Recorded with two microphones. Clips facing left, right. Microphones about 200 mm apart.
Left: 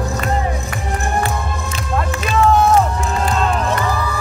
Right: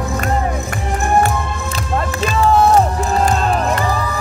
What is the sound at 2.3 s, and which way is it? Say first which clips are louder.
Music: even; 35° right (ahead or behind).